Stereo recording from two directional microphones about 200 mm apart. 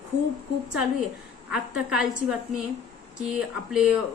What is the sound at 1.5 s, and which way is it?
Speech, 5° right (ahead or behind).